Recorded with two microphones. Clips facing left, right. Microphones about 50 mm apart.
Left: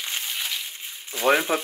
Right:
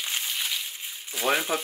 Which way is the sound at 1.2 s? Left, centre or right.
Centre.